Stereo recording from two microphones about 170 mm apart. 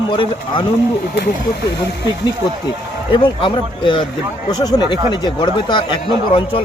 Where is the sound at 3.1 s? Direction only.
30° left (ahead or behind).